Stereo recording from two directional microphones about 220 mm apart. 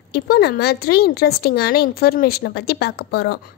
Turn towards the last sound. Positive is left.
turn(degrees=45)  # may be behind; listen again after turning